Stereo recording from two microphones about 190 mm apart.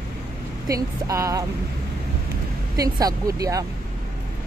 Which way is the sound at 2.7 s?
20° right (ahead or behind).